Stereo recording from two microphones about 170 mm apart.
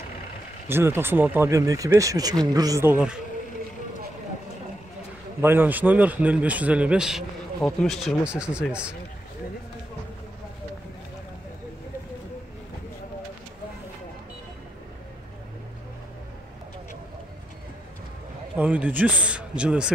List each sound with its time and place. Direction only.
0.7 s a man's voice: 15° right (ahead or behind)
5.4 s a man's voice: 10° right (ahead or behind)
18.6 s a man's voice: 10° right (ahead or behind)